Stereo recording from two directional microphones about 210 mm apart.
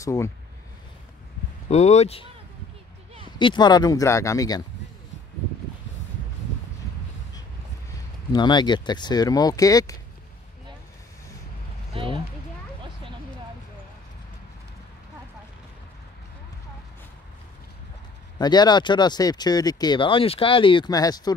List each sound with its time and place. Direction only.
0.0 s speech: 15° left (ahead or behind)
1.7 s speech: 30° left (ahead or behind)
3.3 s speech: 20° left (ahead or behind)
8.3 s speech: 20° left (ahead or behind)
11.9 s a sound: 25° right (ahead or behind)
18.4 s speech: 20° left (ahead or behind)